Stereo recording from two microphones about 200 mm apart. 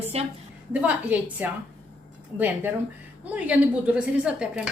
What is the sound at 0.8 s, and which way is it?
Speech, 5° right (ahead or behind).